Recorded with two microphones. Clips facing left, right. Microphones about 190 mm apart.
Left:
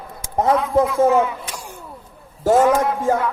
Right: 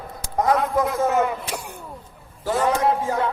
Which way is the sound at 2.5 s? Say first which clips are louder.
Left 9 dB; 45° left (ahead or behind).